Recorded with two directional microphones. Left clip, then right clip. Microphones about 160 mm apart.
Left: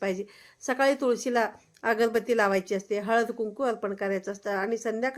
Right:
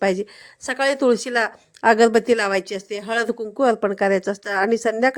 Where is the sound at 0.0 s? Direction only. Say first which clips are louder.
Right 10 dB; 50° right (ahead or behind).